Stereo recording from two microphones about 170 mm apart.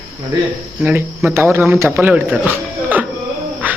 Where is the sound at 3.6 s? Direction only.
10° right (ahead or behind).